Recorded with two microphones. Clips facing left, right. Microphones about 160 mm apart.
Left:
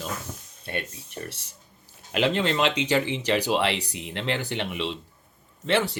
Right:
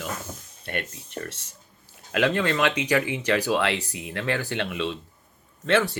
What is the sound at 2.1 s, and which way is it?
Speech, 25° left (ahead or behind).